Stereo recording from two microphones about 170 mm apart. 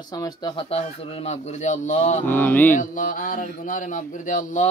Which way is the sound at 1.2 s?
45° left (ahead or behind).